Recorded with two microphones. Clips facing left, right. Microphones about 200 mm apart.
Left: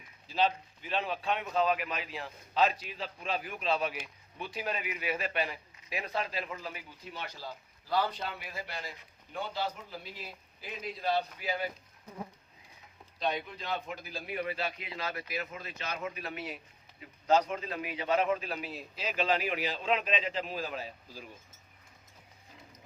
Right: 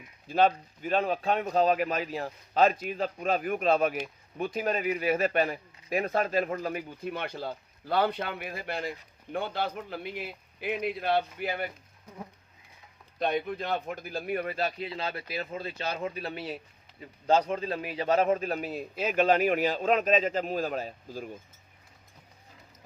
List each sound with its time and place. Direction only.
0.3 s speech: 50° right (ahead or behind)
13.1 s a man's voice: 55° right (ahead or behind)